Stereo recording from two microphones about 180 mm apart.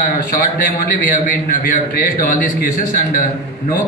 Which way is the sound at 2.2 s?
50° left (ahead or behind).